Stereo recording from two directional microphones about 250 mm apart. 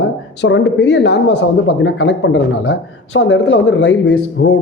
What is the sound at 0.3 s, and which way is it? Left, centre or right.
Speech, left.